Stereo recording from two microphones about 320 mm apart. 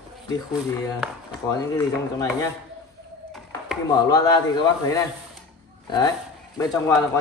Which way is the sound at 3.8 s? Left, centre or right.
Centre.